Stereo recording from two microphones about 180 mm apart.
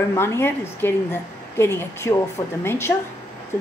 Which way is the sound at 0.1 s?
15° left (ahead or behind).